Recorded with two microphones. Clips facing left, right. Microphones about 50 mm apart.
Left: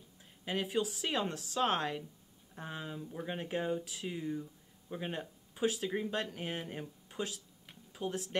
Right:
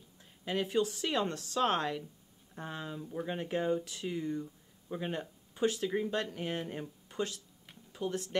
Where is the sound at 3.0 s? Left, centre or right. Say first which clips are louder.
Right 3 dB; centre.